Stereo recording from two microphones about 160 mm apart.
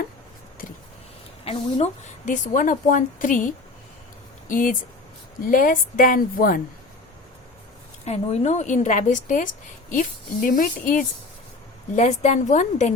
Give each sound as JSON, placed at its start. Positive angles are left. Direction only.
{"t": 1.5, "sound": "a woman's voice", "side_deg": 45}
{"t": 8.0, "sound": "speech", "side_deg": 40}
{"t": 11.9, "sound": "speech", "side_deg": 45}